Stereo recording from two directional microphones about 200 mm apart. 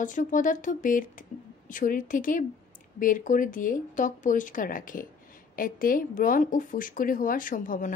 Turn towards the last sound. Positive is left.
turn(degrees=40)  # may be behind; listen again after turning